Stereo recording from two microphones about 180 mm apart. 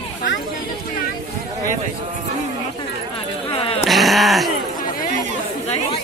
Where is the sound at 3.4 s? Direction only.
30° left (ahead or behind).